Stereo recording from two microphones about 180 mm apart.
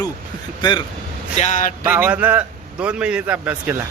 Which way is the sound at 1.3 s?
40° left (ahead or behind).